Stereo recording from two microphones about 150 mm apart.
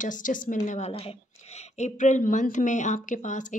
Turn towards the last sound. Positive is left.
turn(degrees=55)  # may be behind; listen again after turning